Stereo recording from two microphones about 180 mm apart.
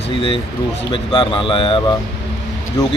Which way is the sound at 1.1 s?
30° left (ahead or behind).